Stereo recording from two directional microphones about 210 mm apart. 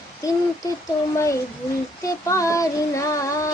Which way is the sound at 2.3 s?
15° left (ahead or behind).